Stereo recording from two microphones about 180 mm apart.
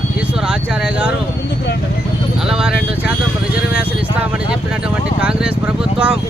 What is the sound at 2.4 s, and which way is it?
Speech, 5° right (ahead or behind).